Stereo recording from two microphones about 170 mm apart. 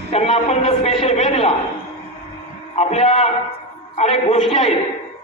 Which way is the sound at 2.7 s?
40° left (ahead or behind).